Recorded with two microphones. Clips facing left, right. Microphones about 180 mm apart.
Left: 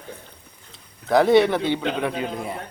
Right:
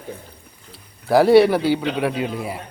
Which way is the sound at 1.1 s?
5° right (ahead or behind).